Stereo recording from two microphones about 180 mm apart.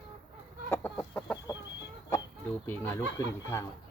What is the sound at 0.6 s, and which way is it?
Chicken, 15° left (ahead or behind).